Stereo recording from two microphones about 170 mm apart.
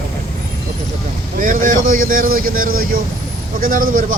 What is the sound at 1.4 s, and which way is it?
Speech, 50° right (ahead or behind).